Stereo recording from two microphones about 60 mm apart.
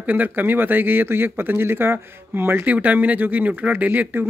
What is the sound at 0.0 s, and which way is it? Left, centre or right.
Speech, right.